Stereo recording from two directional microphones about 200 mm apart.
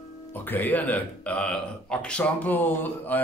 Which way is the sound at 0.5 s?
10° left (ahead or behind).